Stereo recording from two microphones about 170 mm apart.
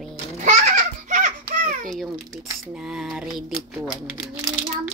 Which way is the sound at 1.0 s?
50° right (ahead or behind).